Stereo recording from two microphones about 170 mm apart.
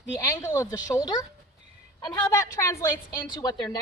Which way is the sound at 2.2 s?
15° left (ahead or behind).